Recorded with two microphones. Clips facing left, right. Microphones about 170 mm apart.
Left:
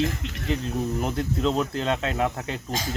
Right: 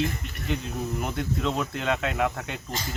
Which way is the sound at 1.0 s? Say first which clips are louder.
Left 2 dB; 30° left (ahead or behind).